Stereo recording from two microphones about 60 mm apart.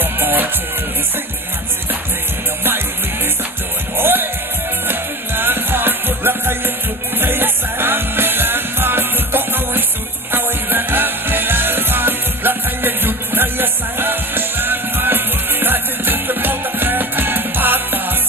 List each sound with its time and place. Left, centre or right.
0.0 s music: right
4.0 s music: right